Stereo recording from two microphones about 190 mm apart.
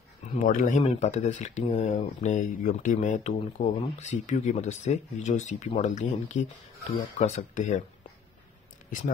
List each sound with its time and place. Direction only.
0.4 s speech: 45° left (ahead or behind)